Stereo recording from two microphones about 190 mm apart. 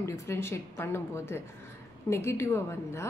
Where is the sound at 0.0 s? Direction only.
15° left (ahead or behind).